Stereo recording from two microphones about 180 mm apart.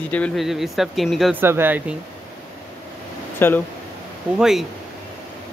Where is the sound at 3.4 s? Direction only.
10° left (ahead or behind).